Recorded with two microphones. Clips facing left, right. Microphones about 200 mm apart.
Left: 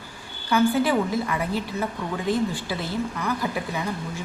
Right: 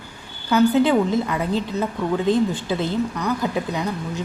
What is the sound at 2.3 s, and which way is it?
A woman's voice, 20° right (ahead or behind).